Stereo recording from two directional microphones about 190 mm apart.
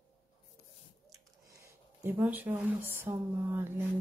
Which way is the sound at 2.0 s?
10° right (ahead or behind).